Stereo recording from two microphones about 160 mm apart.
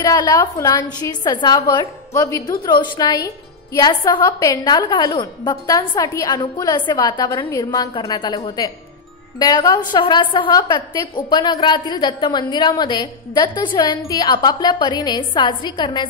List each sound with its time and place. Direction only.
0.0 s a woman's voice: 25° left (ahead or behind)